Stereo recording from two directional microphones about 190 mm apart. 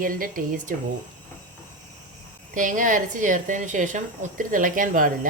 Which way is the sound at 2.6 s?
45° right (ahead or behind).